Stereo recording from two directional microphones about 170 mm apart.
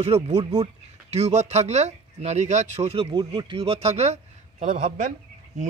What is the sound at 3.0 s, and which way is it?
A man's voice, 25° right (ahead or behind).